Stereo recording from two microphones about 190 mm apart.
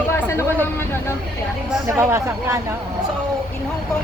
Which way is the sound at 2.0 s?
15° right (ahead or behind).